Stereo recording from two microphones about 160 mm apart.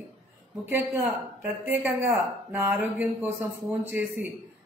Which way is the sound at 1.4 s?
10° right (ahead or behind).